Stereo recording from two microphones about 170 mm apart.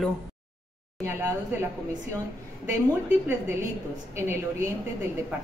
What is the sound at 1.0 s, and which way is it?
Speech, 15° right (ahead or behind).